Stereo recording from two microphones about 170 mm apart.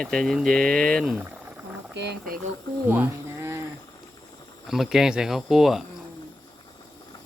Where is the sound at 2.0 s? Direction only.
75° right (ahead or behind).